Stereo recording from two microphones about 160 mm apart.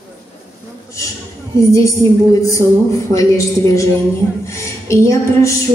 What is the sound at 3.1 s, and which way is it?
A woman's voice, 20° left (ahead or behind).